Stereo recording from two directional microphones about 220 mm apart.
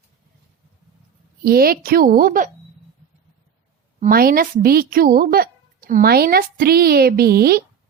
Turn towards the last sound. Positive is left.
turn(degrees=-45)  # may be behind; listen again after turning